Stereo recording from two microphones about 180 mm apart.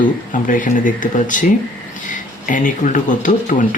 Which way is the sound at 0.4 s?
45° left (ahead or behind).